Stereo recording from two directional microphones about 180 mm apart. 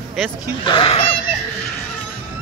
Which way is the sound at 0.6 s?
30° left (ahead or behind).